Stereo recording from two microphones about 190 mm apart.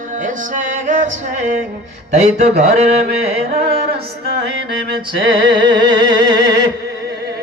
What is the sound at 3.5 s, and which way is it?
Music, 55° right (ahead or behind).